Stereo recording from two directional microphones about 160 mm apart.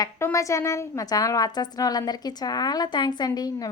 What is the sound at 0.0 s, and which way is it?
A woman's voice, 20° left (ahead or behind).